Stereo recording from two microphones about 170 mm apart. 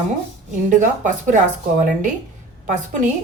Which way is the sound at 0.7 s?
50° right (ahead or behind).